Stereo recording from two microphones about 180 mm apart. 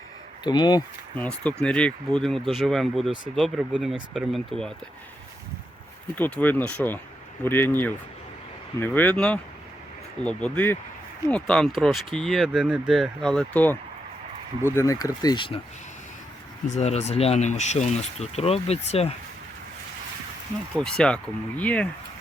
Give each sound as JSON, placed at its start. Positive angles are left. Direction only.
{"t": 0.4, "sound": "speech", "side_deg": 25}
{"t": 1.1, "sound": "speech", "side_deg": 10}
{"t": 6.1, "sound": "speech", "side_deg": 10}
{"t": 16.6, "sound": "speech", "side_deg": 40}
{"t": 20.7, "sound": "speech", "side_deg": 5}